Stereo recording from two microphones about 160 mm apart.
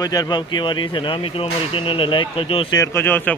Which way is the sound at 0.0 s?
25° left (ahead or behind).